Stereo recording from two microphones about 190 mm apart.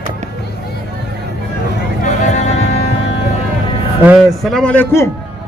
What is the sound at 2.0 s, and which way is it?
Music, 35° left (ahead or behind).